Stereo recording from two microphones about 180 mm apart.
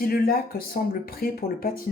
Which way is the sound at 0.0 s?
55° left (ahead or behind).